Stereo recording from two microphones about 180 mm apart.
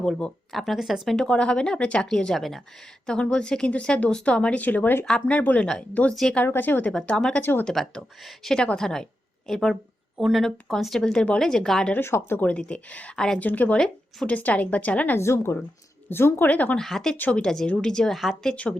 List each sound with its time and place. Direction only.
0.0 s speech: 5° left (ahead or behind)